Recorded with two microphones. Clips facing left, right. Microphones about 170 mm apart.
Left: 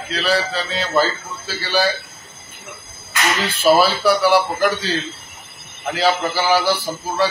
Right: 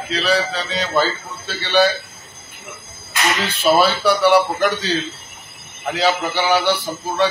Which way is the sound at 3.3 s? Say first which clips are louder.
Left 2 dB; centre (ahead or behind).